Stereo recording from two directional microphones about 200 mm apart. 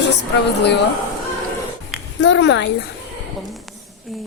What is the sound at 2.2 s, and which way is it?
Speech, 60° left (ahead or behind).